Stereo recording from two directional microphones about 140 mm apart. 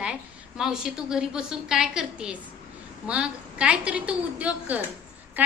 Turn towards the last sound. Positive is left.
turn(degrees=-10)  # may be behind; listen again after turning